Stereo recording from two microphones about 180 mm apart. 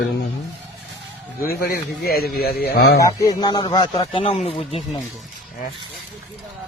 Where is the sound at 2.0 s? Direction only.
60° left (ahead or behind).